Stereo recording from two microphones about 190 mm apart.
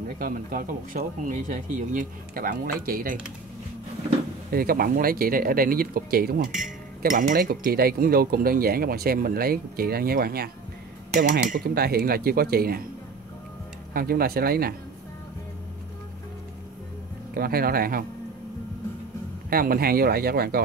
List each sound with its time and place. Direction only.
0.2 s speech: 45° right (ahead or behind)
4.5 s speech: 50° right (ahead or behind)
13.9 s speech: 50° right (ahead or behind)
17.3 s speech: 50° right (ahead or behind)
19.5 s speech: 50° right (ahead or behind)